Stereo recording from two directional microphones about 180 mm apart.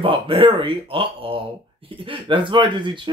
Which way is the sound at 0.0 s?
30° right (ahead or behind).